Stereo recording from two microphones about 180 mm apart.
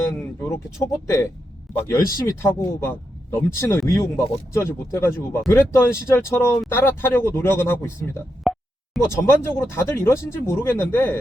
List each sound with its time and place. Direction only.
0.4 s a man's voice: 15° left (ahead or behind)
8.4 s plop: centre (ahead or behind)
9.0 s speech: 15° left (ahead or behind)